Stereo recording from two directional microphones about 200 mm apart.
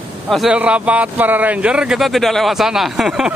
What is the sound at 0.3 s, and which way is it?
Speech, centre (ahead or behind).